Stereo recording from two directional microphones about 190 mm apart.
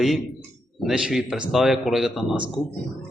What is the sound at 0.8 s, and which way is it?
Speech, 5° right (ahead or behind).